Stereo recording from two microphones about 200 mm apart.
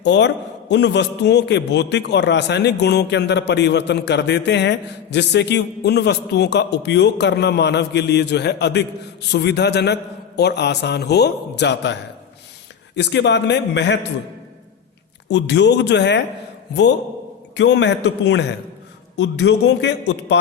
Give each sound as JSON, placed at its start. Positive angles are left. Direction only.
{"t": 0.0, "sound": "a man's voice", "side_deg": 60}
{"t": 13.0, "sound": "a man's voice", "side_deg": 60}
{"t": 15.3, "sound": "a man's voice", "side_deg": 60}
{"t": 17.6, "sound": "a man's voice", "side_deg": 60}